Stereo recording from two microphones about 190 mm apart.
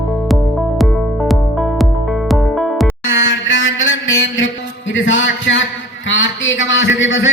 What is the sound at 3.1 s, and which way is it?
Mantra, 85° left.